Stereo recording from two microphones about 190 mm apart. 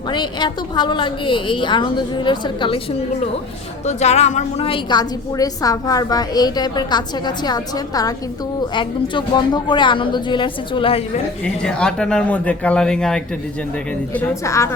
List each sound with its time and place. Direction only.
0.1 s a woman's voice: 25° left (ahead or behind)
3.8 s a woman's voice: 35° left (ahead or behind)
11.6 s a woman's voice: 5° left (ahead or behind)